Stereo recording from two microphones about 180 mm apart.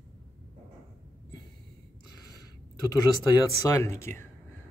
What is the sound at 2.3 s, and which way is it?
Speech, 20° left (ahead or behind).